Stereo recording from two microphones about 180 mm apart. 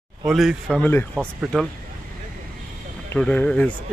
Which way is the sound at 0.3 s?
Centre (ahead or behind).